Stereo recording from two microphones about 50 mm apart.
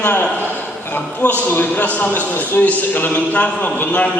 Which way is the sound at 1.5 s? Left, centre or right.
Left.